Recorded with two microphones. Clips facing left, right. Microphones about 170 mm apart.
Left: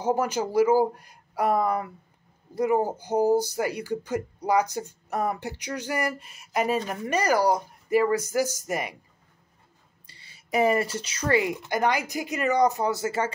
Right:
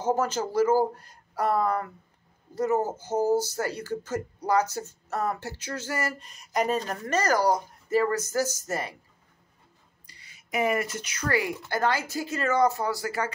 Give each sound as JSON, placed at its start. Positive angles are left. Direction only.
{"t": 0.0, "sound": "speech", "side_deg": 10}
{"t": 10.0, "sound": "speech", "side_deg": 30}